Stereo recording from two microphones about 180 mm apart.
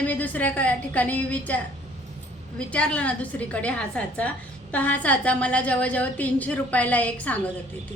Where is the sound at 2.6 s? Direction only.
5° left (ahead or behind).